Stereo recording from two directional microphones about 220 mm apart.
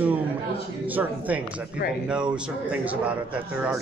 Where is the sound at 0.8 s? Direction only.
5° right (ahead or behind).